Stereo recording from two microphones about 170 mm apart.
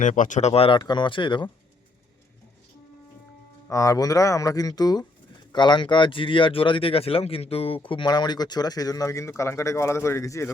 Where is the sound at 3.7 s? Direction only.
20° left (ahead or behind).